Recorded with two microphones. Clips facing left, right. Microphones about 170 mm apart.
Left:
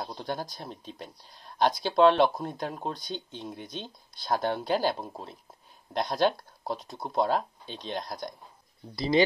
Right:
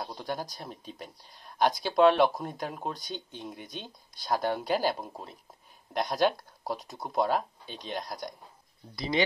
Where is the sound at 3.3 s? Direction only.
15° right (ahead or behind).